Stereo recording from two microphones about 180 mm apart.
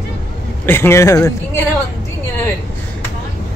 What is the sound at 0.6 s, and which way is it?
Speech, 15° left (ahead or behind).